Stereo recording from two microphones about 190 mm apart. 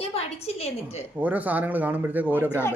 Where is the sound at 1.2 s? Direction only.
10° right (ahead or behind).